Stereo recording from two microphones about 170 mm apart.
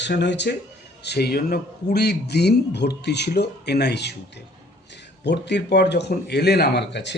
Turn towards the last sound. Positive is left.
turn(degrees=85)